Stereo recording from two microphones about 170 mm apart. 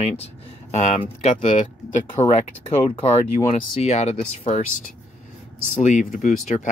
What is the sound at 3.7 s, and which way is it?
Speech, 40° left (ahead or behind).